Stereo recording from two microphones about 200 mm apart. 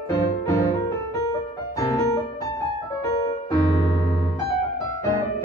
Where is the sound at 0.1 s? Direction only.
15° left (ahead or behind).